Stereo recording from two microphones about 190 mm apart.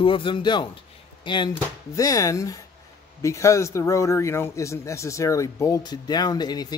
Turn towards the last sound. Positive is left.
turn(degrees=20)  # may be behind; listen again after turning